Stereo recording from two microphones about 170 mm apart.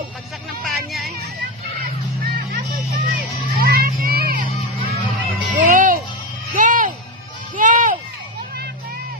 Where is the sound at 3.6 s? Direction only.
65° right (ahead or behind).